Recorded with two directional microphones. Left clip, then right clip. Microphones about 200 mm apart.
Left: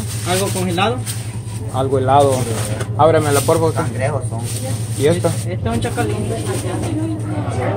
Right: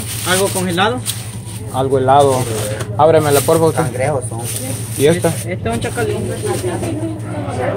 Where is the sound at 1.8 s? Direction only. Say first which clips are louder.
Right 2 dB; 15° right (ahead or behind).